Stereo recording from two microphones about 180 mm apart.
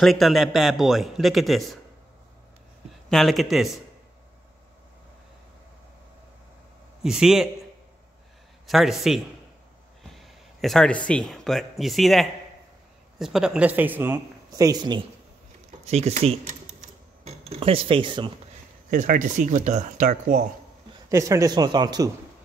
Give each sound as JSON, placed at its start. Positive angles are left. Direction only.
{"t": 0.0, "sound": "speech", "side_deg": 0}
{"t": 3.1, "sound": "speech", "side_deg": 0}
{"t": 7.0, "sound": "speech", "side_deg": -5}
{"t": 8.6, "sound": "speech", "side_deg": 0}
{"t": 15.8, "sound": "speech", "side_deg": -35}
{"t": 18.9, "sound": "speech", "side_deg": -45}
{"t": 21.1, "sound": "speech", "side_deg": -15}